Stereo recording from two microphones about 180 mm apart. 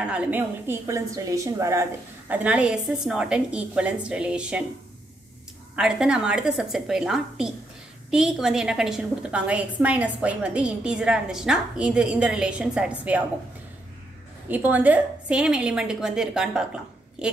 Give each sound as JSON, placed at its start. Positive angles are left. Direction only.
{"t": 0.0, "sound": "a woman's voice", "side_deg": -5}
{"t": 5.8, "sound": "a woman's voice", "side_deg": -5}
{"t": 14.5, "sound": "a woman's voice", "side_deg": -10}